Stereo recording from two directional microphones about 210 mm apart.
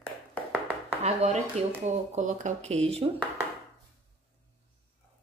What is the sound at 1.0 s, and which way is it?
Speech, 30° right (ahead or behind).